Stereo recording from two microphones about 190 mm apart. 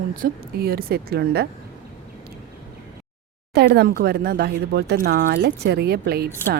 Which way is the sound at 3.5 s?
60° right (ahead or behind).